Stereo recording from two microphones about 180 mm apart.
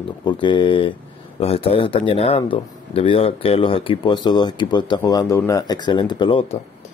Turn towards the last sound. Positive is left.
turn(degrees=30)  # may be behind; listen again after turning